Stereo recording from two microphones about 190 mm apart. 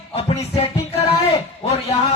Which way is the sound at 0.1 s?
30° left (ahead or behind).